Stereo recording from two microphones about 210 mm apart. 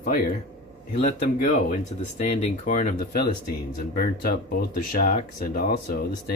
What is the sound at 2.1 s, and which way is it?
Speech, 35° left (ahead or behind).